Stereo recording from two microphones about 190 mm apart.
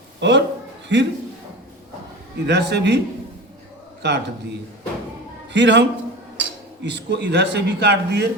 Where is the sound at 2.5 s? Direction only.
65° right (ahead or behind).